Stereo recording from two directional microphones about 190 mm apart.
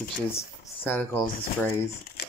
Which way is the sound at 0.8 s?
10° left (ahead or behind).